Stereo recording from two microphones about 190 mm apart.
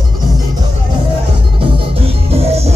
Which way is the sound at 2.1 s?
30° right (ahead or behind).